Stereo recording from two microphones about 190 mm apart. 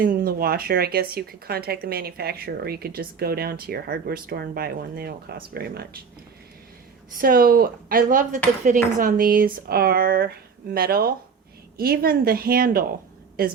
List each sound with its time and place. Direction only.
0.0 s speech: 50° right (ahead or behind)
7.2 s speech: 50° right (ahead or behind)